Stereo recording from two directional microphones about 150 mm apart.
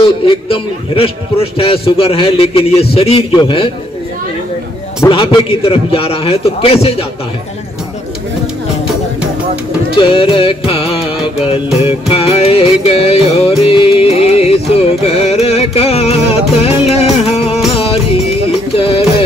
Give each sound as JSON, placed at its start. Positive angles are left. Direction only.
{"t": 0.0, "sound": "a man's voice", "side_deg": 35}
{"t": 5.1, "sound": "a man's voice", "side_deg": 35}
{"t": 9.9, "sound": "a man's voice", "side_deg": 35}
{"t": 11.8, "sound": "music", "side_deg": 40}